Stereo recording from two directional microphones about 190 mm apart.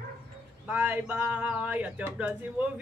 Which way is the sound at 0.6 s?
10° right (ahead or behind).